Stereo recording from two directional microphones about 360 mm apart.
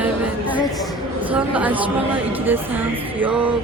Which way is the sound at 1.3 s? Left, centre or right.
Centre.